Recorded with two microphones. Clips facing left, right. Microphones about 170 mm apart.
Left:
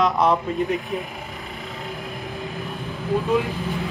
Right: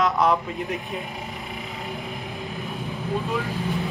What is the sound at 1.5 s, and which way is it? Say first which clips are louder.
Vehicle: left 2 dB; centre (ahead or behind).